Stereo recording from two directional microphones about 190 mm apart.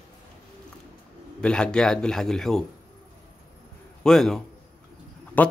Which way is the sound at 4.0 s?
Centre (ahead or behind).